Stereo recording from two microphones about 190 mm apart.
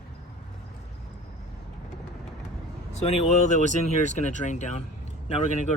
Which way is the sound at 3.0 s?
35° left (ahead or behind).